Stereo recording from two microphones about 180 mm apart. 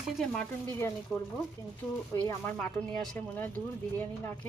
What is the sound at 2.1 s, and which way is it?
Speech, 5° left (ahead or behind).